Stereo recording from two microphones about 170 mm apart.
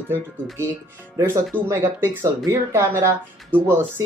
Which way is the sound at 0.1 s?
15° right (ahead or behind).